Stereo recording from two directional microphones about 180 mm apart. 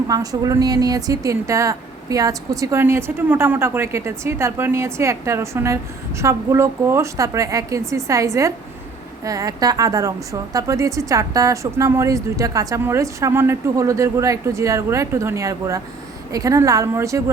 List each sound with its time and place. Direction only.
0.1 s speech: 20° right (ahead or behind)